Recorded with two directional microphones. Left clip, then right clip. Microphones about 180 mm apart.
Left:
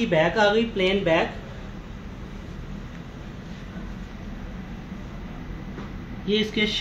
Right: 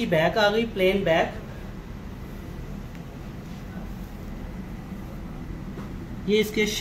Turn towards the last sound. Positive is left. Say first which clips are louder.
# right 1 dB
turn(degrees=15)  # may be behind; listen again after turning